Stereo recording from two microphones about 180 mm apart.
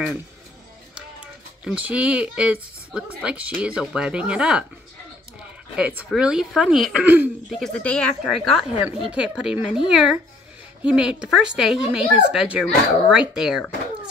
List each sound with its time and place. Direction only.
0.9 s speech: 5° right (ahead or behind)
5.8 s speech: 10° right (ahead or behind)
7.6 s speech: 5° left (ahead or behind)